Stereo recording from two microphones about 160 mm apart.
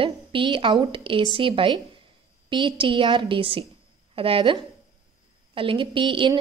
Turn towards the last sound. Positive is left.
turn(degrees=-30)  # may be behind; listen again after turning